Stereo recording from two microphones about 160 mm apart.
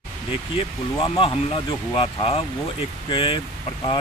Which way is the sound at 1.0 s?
35° left (ahead or behind).